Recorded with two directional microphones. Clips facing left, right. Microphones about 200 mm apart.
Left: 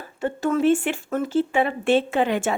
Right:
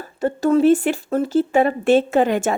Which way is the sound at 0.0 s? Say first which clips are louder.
Right 5 dB; 40° right (ahead or behind).